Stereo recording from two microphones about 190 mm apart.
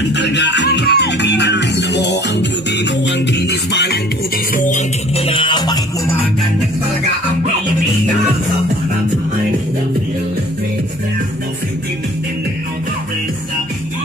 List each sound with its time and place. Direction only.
0.1 s music: 65° left (ahead or behind)
4.6 s music: 40° left (ahead or behind)